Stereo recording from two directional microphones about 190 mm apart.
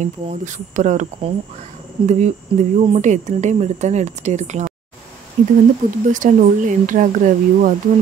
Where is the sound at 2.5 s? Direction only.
30° right (ahead or behind).